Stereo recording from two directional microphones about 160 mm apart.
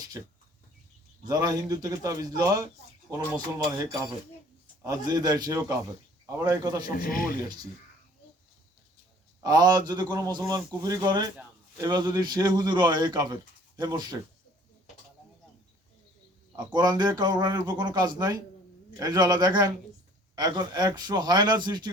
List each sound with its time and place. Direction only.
1.3 s a man's voice: 25° right (ahead or behind)
4.8 s a man's voice: 25° right (ahead or behind)
6.9 s a man's voice: 65° left (ahead or behind)
9.4 s a man's voice: 25° right (ahead or behind)
16.6 s a man's voice: 25° right (ahead or behind)